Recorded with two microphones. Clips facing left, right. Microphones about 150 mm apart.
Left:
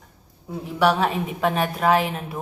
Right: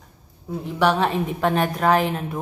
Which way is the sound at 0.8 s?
5° left (ahead or behind).